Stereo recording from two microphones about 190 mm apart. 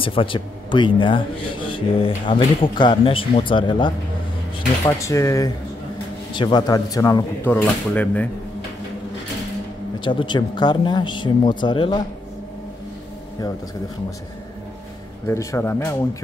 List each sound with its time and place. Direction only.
0.0 s speech: 30° left (ahead or behind); by 8.3 s 10° left (ahead or behind)
9.9 s speech: 25° left (ahead or behind)
15.2 s speech: 15° left (ahead or behind)